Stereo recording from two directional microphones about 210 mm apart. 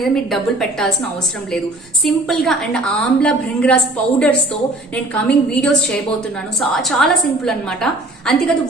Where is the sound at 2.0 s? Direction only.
Centre (ahead or behind).